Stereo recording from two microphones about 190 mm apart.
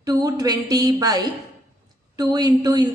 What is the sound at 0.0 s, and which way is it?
A woman's voice, 20° right (ahead or behind).